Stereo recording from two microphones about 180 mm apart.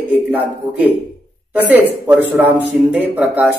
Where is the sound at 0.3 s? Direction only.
10° right (ahead or behind).